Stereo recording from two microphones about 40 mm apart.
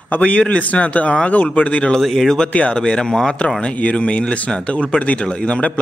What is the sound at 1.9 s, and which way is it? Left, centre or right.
Speech, centre.